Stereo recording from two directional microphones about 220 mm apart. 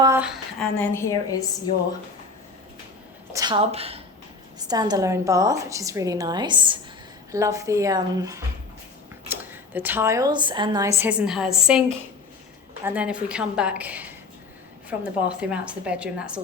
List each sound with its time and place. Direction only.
0.0 s a sound: 10° right (ahead or behind)
0.9 s a woman's voice: 15° left (ahead or behind)
3.3 s a woman's voice: 20° right (ahead or behind); by 11.8 s 5° right (ahead or behind)
12.8 s a woman's voice: 5° right (ahead or behind)